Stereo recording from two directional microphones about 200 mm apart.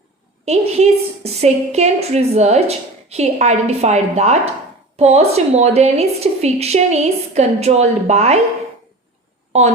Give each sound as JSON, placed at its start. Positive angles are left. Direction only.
{"t": 0.4, "sound": "a woman's voice", "side_deg": -30}